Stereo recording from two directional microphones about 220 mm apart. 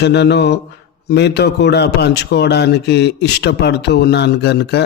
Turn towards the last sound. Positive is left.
turn(degrees=50)  # may be behind; listen again after turning